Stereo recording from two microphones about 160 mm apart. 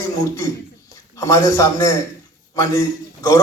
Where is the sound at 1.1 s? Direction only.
20° left (ahead or behind).